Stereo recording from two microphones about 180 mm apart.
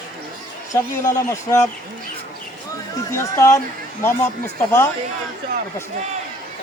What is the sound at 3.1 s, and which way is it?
Speech, 15° left (ahead or behind).